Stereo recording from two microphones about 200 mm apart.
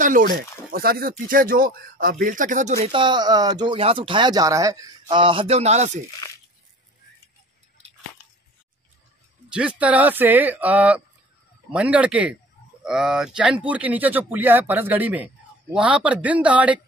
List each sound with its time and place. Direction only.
0.0 s speech: 40° right (ahead or behind)
9.5 s speech: 5° right (ahead or behind)